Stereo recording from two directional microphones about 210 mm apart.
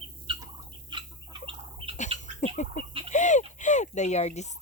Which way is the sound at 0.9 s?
25° right (ahead or behind).